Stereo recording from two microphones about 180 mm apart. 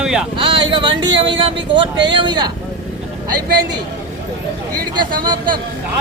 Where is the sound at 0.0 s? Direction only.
5° right (ahead or behind).